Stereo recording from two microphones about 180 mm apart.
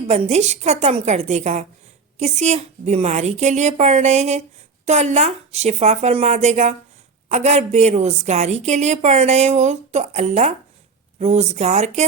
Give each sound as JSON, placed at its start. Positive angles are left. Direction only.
{"t": 0.1, "sound": "a woman's voice", "side_deg": -35}